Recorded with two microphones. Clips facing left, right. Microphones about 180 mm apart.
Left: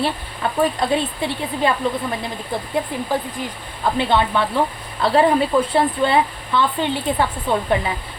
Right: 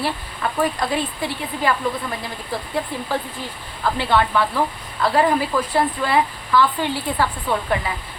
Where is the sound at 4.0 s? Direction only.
20° left (ahead or behind).